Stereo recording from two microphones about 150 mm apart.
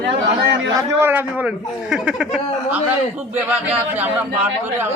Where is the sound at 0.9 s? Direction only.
15° right (ahead or behind).